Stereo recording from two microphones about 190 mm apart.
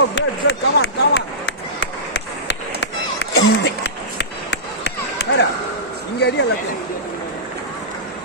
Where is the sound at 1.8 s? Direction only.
65° left (ahead or behind).